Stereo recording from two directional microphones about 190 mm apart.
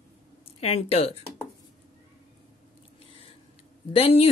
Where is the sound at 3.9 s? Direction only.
30° left (ahead or behind).